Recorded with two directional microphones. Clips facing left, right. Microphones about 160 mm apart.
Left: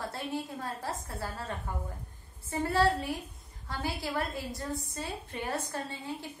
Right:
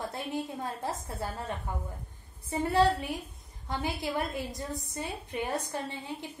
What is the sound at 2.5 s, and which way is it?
A woman's voice, 20° right (ahead or behind).